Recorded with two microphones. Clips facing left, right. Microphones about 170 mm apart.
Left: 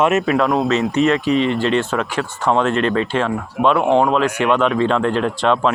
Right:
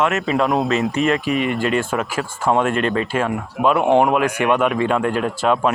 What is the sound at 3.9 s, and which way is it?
Speech, 15° right (ahead or behind).